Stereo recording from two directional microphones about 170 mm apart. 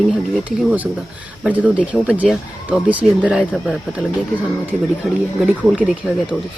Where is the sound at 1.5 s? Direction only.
10° right (ahead or behind).